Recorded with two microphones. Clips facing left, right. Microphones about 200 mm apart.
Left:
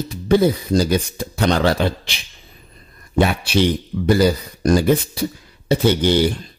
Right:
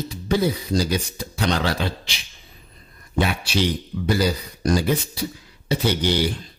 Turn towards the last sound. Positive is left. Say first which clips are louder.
# left 6 dB
turn(degrees=55)  # may be behind; listen again after turning